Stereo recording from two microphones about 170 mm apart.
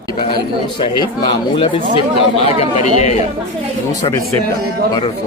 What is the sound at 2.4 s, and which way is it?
Speech, 40° left (ahead or behind).